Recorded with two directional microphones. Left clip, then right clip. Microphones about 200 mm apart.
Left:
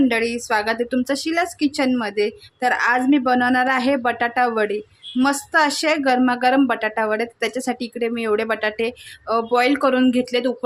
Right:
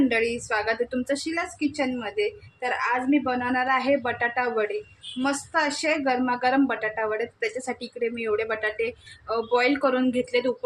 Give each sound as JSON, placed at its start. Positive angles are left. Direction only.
{"t": 0.1, "sound": "speech", "side_deg": 40}